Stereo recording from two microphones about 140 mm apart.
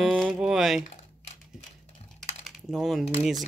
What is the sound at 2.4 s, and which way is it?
Speech, centre (ahead or behind).